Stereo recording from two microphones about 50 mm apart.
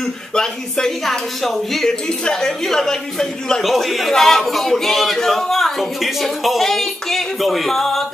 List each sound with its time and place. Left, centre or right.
0.3 s a woman's voice: centre
3.6 s speech: centre